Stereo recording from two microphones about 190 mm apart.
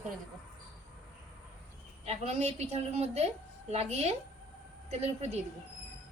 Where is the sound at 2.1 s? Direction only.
35° right (ahead or behind).